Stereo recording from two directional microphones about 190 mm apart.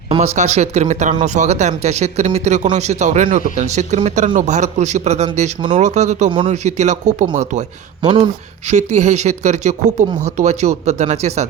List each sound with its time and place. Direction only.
0.3 s speech: 35° right (ahead or behind)
8.0 s speech: 25° right (ahead or behind)
8.7 s speech: 40° right (ahead or behind)